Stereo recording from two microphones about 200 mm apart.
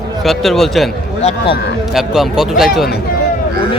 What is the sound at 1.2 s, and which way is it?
Speech, 30° left (ahead or behind).